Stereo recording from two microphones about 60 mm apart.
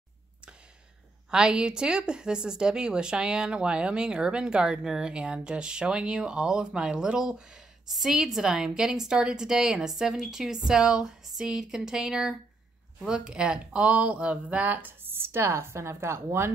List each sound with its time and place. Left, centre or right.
1.3 s a woman's voice: centre; by 16.5 s right